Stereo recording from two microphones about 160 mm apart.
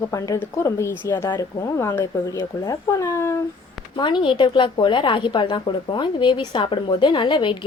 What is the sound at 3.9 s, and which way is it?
A woman's voice, 30° left (ahead or behind).